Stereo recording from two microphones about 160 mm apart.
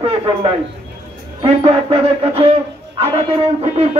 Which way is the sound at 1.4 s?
40° right (ahead or behind).